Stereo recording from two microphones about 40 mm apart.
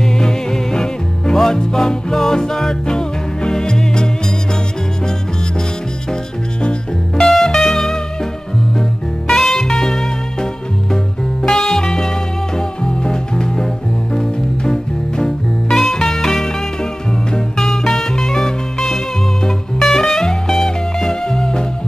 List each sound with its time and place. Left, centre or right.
0.0 s music: centre
7.2 s music: centre
9.3 s music: centre
17.6 s music: centre